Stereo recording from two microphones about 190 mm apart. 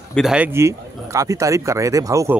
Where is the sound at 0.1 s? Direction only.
5° right (ahead or behind).